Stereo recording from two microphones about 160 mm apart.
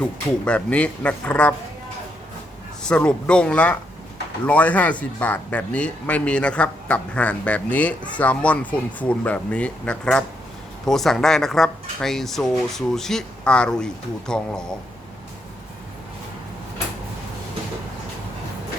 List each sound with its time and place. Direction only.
0.0 s speech: 5° left (ahead or behind)
2.8 s speech: 5° left (ahead or behind)